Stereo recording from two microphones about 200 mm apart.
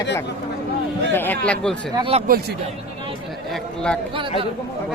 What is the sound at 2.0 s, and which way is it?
Speech, 25° right (ahead or behind).